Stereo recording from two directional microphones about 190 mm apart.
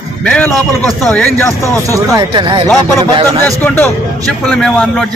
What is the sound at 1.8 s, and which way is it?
Speech, 15° right (ahead or behind).